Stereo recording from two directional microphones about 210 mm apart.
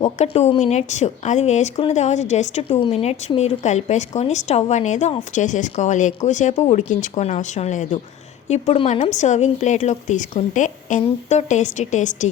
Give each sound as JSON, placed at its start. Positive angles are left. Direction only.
{"t": 0.2, "sound": "a woman's voice", "side_deg": 30}